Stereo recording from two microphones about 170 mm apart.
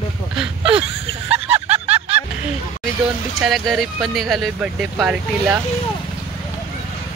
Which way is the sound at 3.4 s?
Centre (ahead or behind).